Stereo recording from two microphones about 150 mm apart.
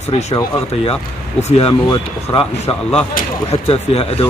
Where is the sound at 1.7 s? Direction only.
30° left (ahead or behind).